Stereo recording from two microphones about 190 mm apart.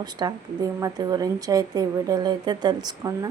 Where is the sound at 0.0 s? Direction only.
20° right (ahead or behind).